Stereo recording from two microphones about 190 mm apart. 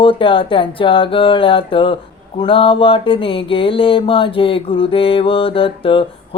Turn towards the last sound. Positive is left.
turn(degrees=30)  # may be behind; listen again after turning